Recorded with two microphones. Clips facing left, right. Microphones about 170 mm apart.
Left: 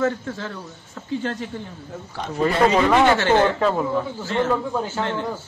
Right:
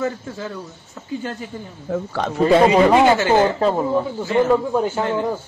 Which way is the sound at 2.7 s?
15° right (ahead or behind).